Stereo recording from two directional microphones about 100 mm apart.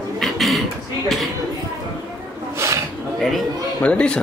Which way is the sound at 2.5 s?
30° right (ahead or behind).